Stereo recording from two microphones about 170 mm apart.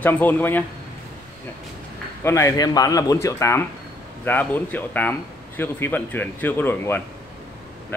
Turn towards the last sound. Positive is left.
turn(degrees=10)  # may be behind; listen again after turning